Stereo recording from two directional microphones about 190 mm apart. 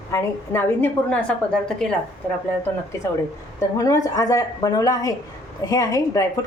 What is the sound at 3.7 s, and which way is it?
A woman's voice, 20° left (ahead or behind).